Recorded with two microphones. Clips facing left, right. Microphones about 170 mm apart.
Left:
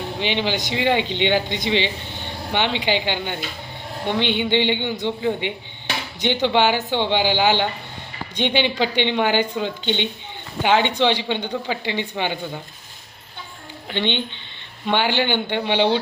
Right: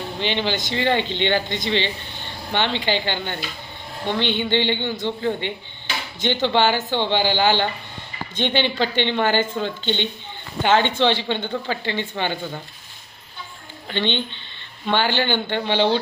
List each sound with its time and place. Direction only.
0.2 s speech: 10° left (ahead or behind)
13.8 s speech: 15° left (ahead or behind)